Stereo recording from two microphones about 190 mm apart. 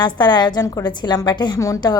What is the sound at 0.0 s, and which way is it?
A woman's voice, 25° left (ahead or behind).